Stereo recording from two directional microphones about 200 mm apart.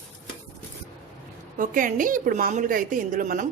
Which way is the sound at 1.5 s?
40° right (ahead or behind).